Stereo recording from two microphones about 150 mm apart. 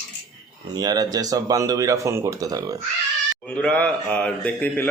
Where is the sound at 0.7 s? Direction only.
25° right (ahead or behind).